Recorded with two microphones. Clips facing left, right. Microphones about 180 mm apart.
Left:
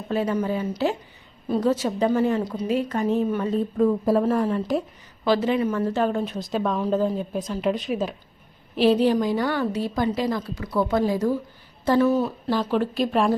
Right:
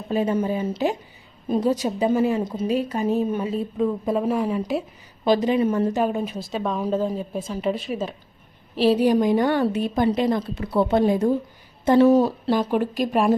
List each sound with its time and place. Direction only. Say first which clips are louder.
0.1 s a woman's voice: right 2 dB; 20° right (ahead or behind)
3.5 s a woman's voice: left 3 dB; 5° right (ahead or behind)
5.2 s a woman's voice: right 2 dB; 15° right (ahead or behind)
6.0 s a woman's voice: even; 10° right (ahead or behind)
9.4 s speech: right 3 dB; 20° right (ahead or behind)
12.0 s speech: right 5 dB; 35° right (ahead or behind)
12.5 s a woman's voice: right 2 dB; 15° right (ahead or behind)